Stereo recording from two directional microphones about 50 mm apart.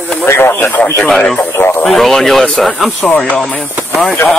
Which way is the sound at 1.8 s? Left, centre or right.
Centre.